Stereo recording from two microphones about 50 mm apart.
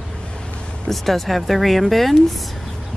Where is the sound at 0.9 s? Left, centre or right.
Centre.